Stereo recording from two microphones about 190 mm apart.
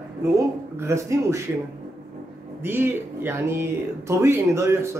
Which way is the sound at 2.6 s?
10° right (ahead or behind).